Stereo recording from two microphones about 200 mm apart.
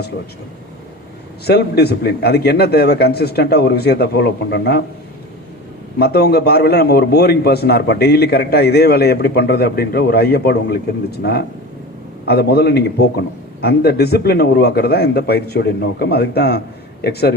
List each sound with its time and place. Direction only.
1.5 s a man's voice: 55° left (ahead or behind)
6.0 s a man's voice: 55° left (ahead or behind)